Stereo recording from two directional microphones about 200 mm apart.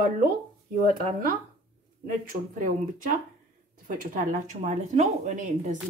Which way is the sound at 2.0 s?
45° right (ahead or behind).